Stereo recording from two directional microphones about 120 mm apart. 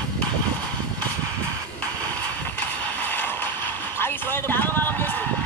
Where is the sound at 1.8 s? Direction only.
15° left (ahead or behind).